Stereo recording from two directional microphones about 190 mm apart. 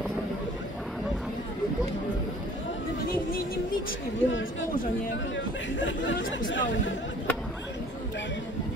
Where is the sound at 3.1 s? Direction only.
50° left (ahead or behind).